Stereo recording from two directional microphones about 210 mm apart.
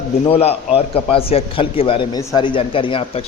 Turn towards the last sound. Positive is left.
turn(degrees=25)  # may be behind; listen again after turning